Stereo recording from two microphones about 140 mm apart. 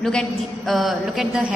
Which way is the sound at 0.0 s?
5° left (ahead or behind).